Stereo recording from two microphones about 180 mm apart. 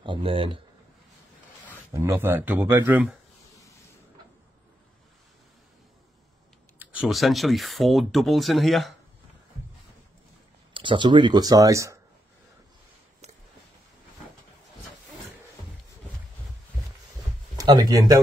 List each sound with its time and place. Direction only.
0.0 s speech: 30° right (ahead or behind)
2.0 s speech: 15° right (ahead or behind)
6.8 s speech: 10° right (ahead or behind)
10.7 s speech: 25° right (ahead or behind)
17.6 s speech: 20° right (ahead or behind)